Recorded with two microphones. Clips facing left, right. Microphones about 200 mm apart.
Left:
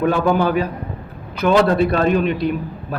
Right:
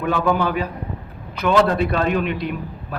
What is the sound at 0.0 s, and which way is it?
A man's voice, 40° left (ahead or behind).